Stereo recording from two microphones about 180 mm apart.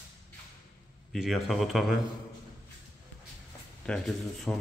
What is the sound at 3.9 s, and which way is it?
Speech, centre (ahead or behind).